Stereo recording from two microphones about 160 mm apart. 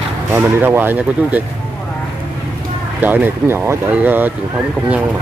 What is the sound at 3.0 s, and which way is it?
Speech, 10° right (ahead or behind).